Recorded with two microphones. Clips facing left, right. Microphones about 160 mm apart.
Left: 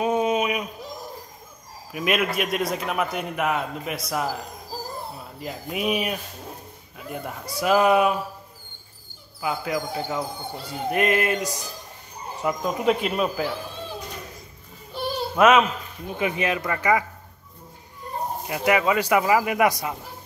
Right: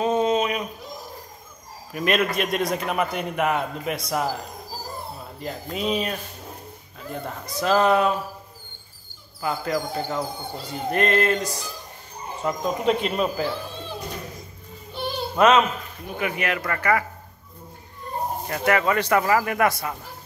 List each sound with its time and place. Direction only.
0.0 s a sound: 10° left (ahead or behind)
1.9 s a man's voice: 5° left (ahead or behind)
5.4 s a man's voice: 5° left (ahead or behind)
9.4 s a man's voice: 5° left (ahead or behind)
15.0 s a sound: 5° left (ahead or behind)
16.2 s speech: 20° left (ahead or behind)
18.5 s speech: 15° left (ahead or behind)